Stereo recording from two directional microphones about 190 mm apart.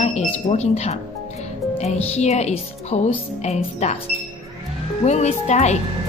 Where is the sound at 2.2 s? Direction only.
35° left (ahead or behind).